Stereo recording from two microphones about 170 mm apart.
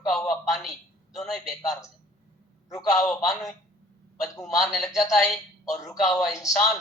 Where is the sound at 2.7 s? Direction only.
Centre (ahead or behind).